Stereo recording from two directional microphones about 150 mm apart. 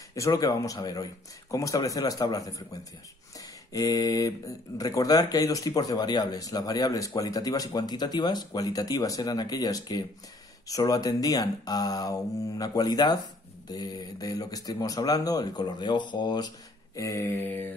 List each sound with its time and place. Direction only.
0.1 s speech: 20° left (ahead or behind)
3.3 s a sound: 25° left (ahead or behind)
4.7 s speech: 25° left (ahead or behind)